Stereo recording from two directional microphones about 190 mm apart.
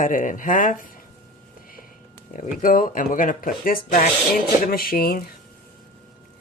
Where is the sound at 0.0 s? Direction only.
45° left (ahead or behind).